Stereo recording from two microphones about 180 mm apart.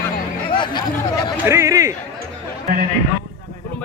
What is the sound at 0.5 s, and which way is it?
Speech, 25° left (ahead or behind).